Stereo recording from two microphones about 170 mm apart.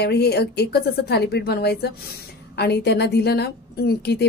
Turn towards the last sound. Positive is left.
turn(degrees=70)  # may be behind; listen again after turning